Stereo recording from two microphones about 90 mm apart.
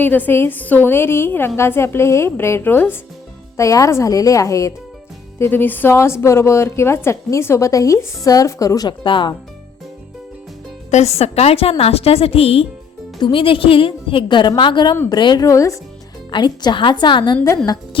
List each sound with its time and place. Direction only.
0.0 s a woman's voice: 20° left (ahead or behind)
3.6 s a woman's voice: 35° left (ahead or behind)
5.4 s a woman's voice: 20° left (ahead or behind); by 8.9 s 40° left (ahead or behind)
8.9 s a woman's voice: 60° left (ahead or behind)
11.5 s a woman's voice: 90° left
13.1 s a woman's voice: 70° left (ahead or behind)
15.4 s a woman's voice: 35° left (ahead or behind)
16.3 s a woman's voice: 55° left (ahead or behind)